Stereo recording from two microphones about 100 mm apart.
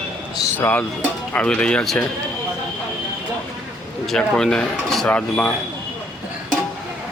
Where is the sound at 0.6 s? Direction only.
20° left (ahead or behind).